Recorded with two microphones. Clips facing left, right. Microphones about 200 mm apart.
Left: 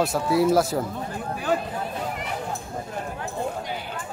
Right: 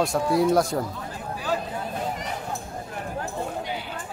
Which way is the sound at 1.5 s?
55° left (ahead or behind).